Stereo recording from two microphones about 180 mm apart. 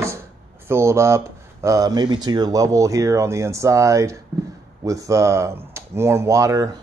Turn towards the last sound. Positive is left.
turn(degrees=-15)  # may be behind; listen again after turning